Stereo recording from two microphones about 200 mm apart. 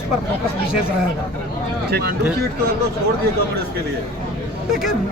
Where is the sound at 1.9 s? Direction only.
50° right (ahead or behind).